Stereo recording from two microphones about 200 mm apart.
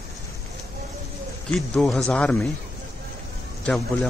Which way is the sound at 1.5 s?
Centre (ahead or behind).